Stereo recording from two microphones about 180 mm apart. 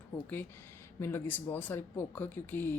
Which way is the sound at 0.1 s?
10° left (ahead or behind).